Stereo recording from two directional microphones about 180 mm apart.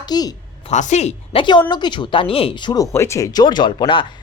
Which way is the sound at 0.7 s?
40° left (ahead or behind).